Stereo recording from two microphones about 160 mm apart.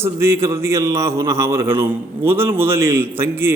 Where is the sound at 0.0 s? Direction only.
15° right (ahead or behind).